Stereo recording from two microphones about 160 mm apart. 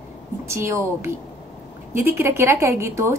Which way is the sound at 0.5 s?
15° right (ahead or behind).